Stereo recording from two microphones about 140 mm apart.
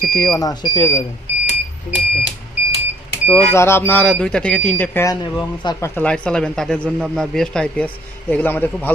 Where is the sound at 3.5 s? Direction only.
20° left (ahead or behind).